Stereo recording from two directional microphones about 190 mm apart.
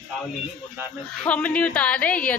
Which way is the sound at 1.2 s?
5° left (ahead or behind).